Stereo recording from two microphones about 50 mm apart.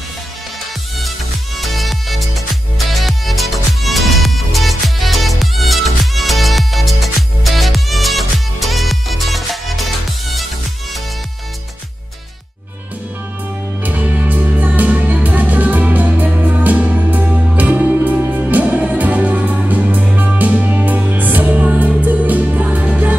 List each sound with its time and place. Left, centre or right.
1.6 s music: centre
13.8 s music: right